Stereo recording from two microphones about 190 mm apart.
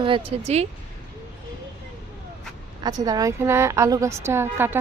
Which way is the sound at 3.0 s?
20° right (ahead or behind).